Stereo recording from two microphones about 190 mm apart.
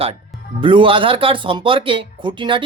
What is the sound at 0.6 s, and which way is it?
Speech, 25° right (ahead or behind).